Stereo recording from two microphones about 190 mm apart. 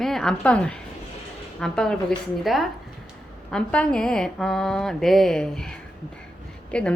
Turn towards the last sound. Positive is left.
turn(degrees=5)  # may be behind; listen again after turning